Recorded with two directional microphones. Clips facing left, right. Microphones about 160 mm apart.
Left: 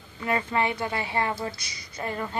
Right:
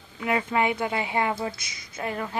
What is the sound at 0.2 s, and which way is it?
A woman's voice, 10° right (ahead or behind).